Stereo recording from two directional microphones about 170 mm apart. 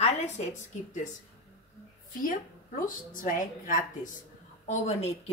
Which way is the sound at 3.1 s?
55° left (ahead or behind).